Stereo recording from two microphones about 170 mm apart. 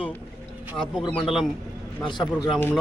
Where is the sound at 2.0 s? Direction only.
25° left (ahead or behind).